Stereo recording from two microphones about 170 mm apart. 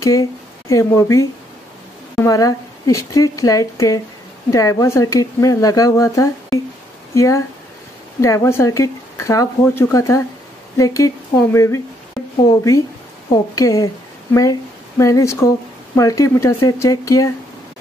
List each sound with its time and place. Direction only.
0.0 s speech: 20° left (ahead or behind)